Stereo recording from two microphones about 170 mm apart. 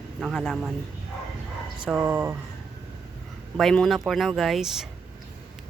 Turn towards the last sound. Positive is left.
turn(degrees=0)  # may be behind; listen again after turning